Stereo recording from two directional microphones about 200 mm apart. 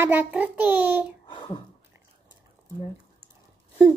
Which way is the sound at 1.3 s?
25° left (ahead or behind).